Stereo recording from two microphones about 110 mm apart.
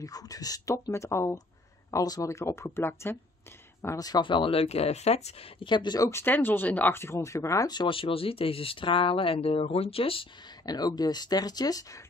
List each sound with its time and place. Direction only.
0.0 s speech: 35° left (ahead or behind)
3.8 s speech: 30° left (ahead or behind); by 5.3 s 75° left (ahead or behind)
5.6 s speech: 45° left (ahead or behind)
6.0 s speech: 20° left (ahead or behind)
7.7 s speech: 50° left (ahead or behind)
10.6 s speech: 35° left (ahead or behind)